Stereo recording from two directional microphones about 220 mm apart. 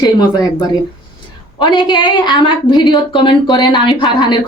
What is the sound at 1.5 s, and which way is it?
A woman's voice, 20° left (ahead or behind).